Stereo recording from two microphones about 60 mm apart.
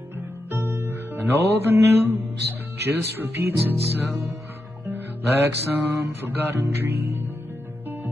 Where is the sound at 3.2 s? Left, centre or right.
Right.